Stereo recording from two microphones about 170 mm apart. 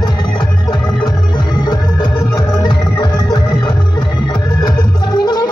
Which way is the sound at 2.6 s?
25° left (ahead or behind).